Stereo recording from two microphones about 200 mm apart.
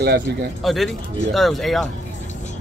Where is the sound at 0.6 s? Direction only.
Centre (ahead or behind).